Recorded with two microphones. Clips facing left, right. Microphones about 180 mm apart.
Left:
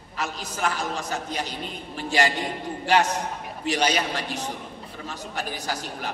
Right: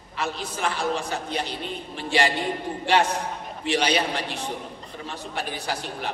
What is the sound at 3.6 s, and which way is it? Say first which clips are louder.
A man's voice: right 1 dB; 40° left (ahead or behind).